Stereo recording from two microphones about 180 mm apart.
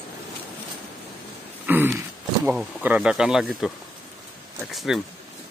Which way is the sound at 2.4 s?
10° right (ahead or behind).